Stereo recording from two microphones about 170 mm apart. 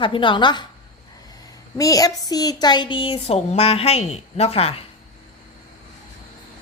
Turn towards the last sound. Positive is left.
turn(degrees=35)  # may be behind; listen again after turning